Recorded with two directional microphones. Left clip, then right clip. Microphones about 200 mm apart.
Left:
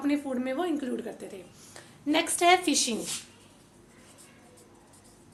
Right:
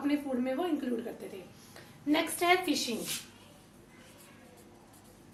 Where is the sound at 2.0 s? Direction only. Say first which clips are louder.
Left 5 dB; 45° left (ahead or behind).